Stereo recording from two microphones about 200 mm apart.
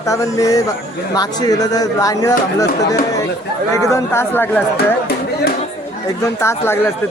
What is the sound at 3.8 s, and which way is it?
Speech, 15° left (ahead or behind).